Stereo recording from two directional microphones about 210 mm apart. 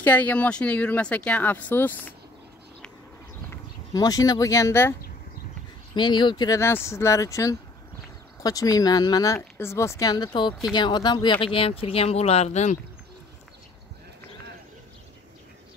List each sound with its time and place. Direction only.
0.0 s speech: 5° left (ahead or behind)
3.4 s speech: 15° left (ahead or behind)
5.9 s speech: 20° left (ahead or behind)